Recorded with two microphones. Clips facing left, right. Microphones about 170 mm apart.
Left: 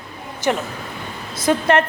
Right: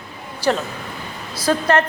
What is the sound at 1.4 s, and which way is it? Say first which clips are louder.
Speech: left 1 dB; 25° left (ahead or behind).